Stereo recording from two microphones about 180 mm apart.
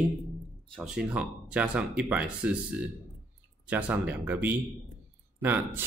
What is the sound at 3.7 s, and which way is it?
Speech, 5° right (ahead or behind).